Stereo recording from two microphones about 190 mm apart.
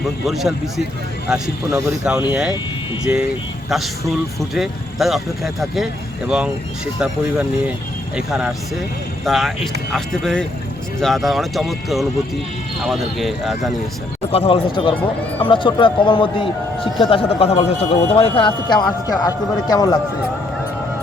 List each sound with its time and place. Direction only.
0.0 s speech: centre (ahead or behind)
8.1 s speech: 5° right (ahead or behind)
14.3 s speech: 30° left (ahead or behind)